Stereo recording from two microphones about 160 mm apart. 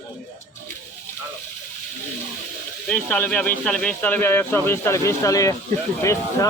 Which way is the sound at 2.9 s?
10° left (ahead or behind).